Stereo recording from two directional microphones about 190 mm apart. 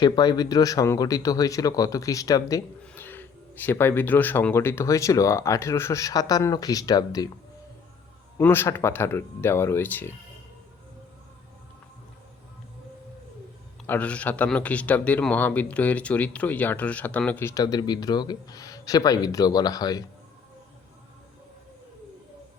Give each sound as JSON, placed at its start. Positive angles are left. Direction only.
{"t": 0.0, "sound": "speech", "side_deg": 20}
{"t": 8.4, "sound": "speech", "side_deg": 10}
{"t": 13.8, "sound": "speech", "side_deg": 10}